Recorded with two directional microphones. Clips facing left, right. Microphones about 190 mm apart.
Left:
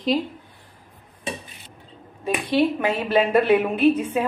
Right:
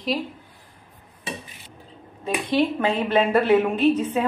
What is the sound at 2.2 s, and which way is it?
Speech, 25° right (ahead or behind).